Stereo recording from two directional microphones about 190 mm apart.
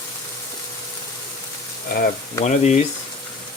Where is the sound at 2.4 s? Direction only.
35° left (ahead or behind).